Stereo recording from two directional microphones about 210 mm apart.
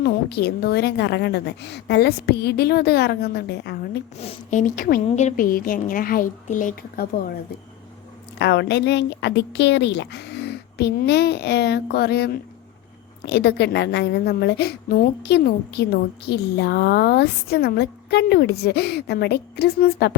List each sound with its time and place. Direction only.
0.0 s a woman's voice: 50° left (ahead or behind)
4.2 s a woman's voice: 35° left (ahead or behind)
8.4 s a woman's voice: 55° left (ahead or behind)